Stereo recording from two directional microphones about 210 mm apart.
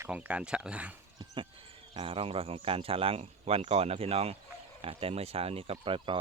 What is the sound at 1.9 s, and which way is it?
Speech, 25° right (ahead or behind).